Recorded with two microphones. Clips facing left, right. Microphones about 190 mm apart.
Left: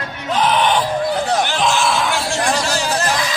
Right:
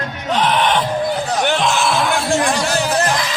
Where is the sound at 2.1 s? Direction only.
55° right (ahead or behind).